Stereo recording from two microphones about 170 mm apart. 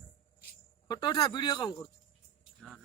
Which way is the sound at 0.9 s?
25° left (ahead or behind).